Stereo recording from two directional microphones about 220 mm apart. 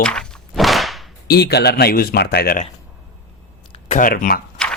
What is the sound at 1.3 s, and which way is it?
A man's voice, 45° left (ahead or behind).